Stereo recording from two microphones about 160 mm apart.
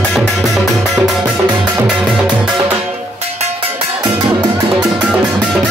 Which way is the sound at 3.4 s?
35° right (ahead or behind).